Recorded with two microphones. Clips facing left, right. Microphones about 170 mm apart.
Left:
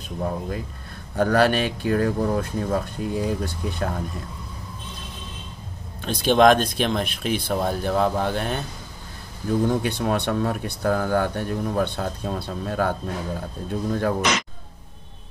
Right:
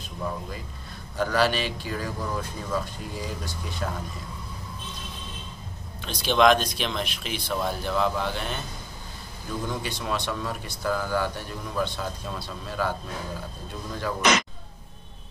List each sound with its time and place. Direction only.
0.2 s speech: 45° left (ahead or behind)
5.9 s speech: 50° left (ahead or behind)